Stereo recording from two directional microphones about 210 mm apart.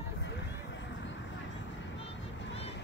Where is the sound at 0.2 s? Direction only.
55° left (ahead or behind).